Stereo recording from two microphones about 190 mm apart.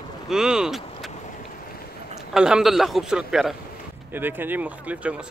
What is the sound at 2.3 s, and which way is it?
Speech, 5° right (ahead or behind).